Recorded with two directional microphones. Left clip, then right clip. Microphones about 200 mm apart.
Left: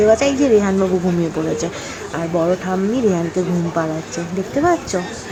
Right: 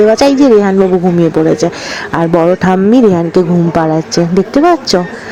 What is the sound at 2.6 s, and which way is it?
Speech, 50° right (ahead or behind).